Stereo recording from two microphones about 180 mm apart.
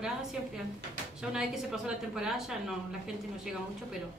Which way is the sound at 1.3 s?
5° right (ahead or behind).